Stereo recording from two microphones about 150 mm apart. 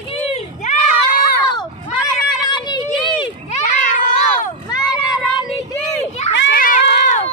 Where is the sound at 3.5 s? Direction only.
55° left (ahead or behind).